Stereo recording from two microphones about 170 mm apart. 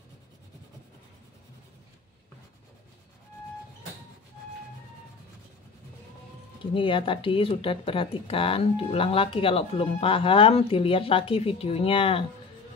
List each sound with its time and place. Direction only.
6.6 s speech: 30° left (ahead or behind)